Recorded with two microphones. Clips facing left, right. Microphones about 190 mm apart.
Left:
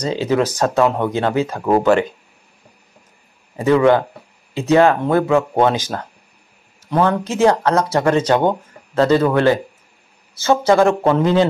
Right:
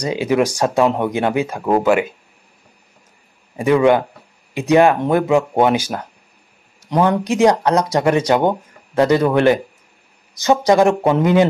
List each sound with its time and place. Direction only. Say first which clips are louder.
0.0 s speech: right 1 dB; 15° right (ahead or behind)
3.5 s speech: even; 15° right (ahead or behind)